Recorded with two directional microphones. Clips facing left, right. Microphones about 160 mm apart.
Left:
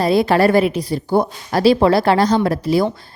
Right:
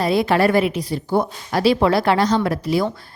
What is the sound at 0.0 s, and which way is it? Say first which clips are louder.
A woman's voice: left 3 dB; 35° left (ahead or behind).